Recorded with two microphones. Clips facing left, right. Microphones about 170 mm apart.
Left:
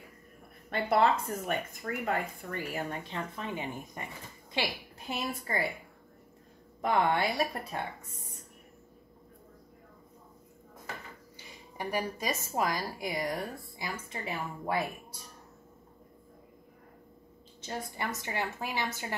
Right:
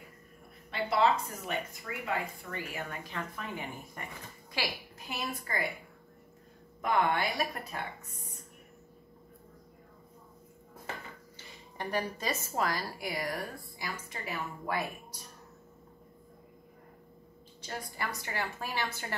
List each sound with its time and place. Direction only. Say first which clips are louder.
0.7 s a woman's voice: left 2 dB; 50° left (ahead or behind); by 5.7 s 30° left (ahead or behind)
6.8 s speech: left 2 dB; 30° left (ahead or behind)
11.3 s a sound: left 2 dB; 10° left (ahead or behind)
12.5 s a woman's voice: left 2 dB; 15° left (ahead or behind)
17.6 s a woman's voice: left 2 dB; 25° left (ahead or behind)